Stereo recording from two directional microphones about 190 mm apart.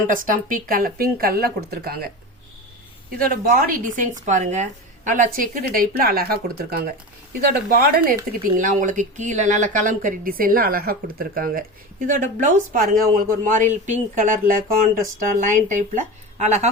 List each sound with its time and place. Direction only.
0.1 s speech: 45° right (ahead or behind)
3.5 s speech: 40° right (ahead or behind)